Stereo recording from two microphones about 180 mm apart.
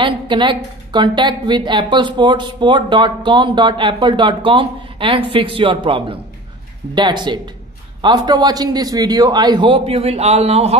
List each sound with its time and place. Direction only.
0.0 s a woman's voice: 25° right (ahead or behind)